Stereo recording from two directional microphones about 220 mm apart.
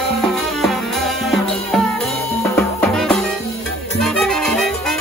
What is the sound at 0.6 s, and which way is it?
Music, centre (ahead or behind).